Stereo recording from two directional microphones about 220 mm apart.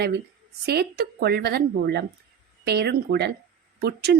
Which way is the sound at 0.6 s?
45° right (ahead or behind).